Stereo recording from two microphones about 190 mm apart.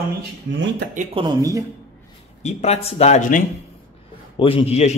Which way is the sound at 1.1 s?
25° right (ahead or behind).